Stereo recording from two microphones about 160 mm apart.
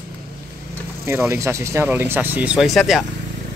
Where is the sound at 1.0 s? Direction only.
15° right (ahead or behind).